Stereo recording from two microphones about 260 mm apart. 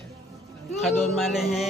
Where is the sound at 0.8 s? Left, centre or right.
Centre.